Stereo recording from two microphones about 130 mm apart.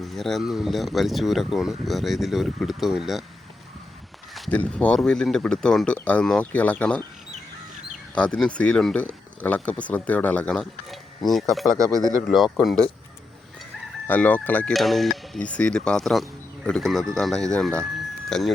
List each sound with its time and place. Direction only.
0.0 s speech: centre (ahead or behind)
4.5 s speech: 10° left (ahead or behind)
8.1 s speech: 5° left (ahead or behind)
11.8 s speech: 25° right (ahead or behind)
12.3 s speech: centre (ahead or behind)
14.1 s speech: 10° left (ahead or behind)
14.7 s speech: centre (ahead or behind)